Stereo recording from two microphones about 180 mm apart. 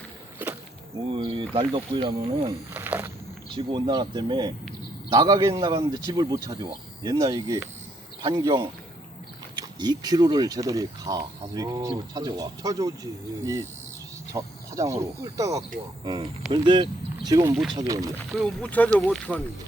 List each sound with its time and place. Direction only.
0.4 s a sound: 10° right (ahead or behind)
1.1 s speech: 25° right (ahead or behind)
2.7 s a sound: 10° right (ahead or behind)
3.5 s speech: 25° right (ahead or behind)
17.5 s speech: centre (ahead or behind)
17.7 s speech: 20° right (ahead or behind)
18.3 s speech: centre (ahead or behind)